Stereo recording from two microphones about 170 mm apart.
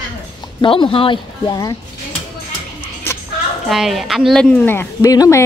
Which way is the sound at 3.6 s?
Centre (ahead or behind).